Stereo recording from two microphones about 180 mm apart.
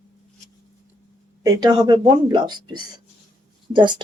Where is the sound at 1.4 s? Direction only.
20° right (ahead or behind).